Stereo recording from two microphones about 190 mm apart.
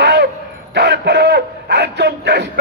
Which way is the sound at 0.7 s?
60° right (ahead or behind).